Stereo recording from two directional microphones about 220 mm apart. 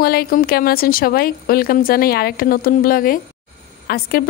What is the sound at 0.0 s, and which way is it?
Speech, 45° left (ahead or behind).